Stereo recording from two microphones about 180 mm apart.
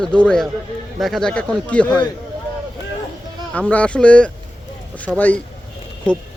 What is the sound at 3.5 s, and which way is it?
Speech, 10° left (ahead or behind).